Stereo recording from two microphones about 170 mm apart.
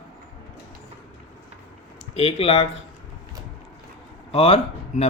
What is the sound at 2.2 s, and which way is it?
Speech, 40° left (ahead or behind).